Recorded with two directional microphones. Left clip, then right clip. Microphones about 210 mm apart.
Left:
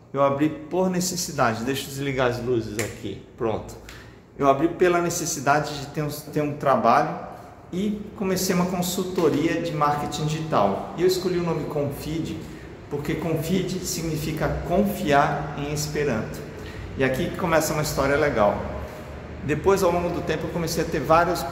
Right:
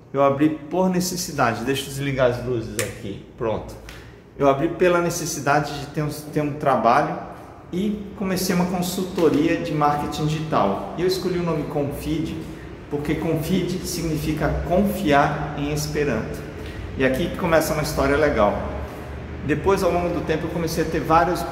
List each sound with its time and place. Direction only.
0.1 s a man's voice: 10° left (ahead or behind)
3.4 s a man's voice: 15° left (ahead or behind)
13.0 s a man's voice: 15° left (ahead or behind)